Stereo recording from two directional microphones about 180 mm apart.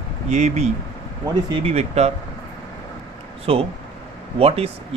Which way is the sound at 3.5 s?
30° right (ahead or behind).